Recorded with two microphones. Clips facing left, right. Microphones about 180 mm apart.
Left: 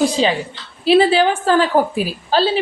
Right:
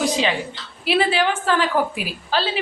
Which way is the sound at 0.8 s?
30° left (ahead or behind).